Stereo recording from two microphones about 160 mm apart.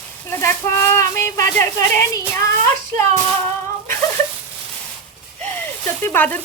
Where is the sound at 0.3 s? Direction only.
15° left (ahead or behind).